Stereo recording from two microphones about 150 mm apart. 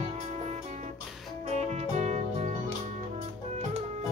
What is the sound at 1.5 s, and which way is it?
Music, 50° right (ahead or behind).